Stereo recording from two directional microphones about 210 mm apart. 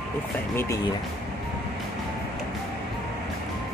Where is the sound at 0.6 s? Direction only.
15° left (ahead or behind).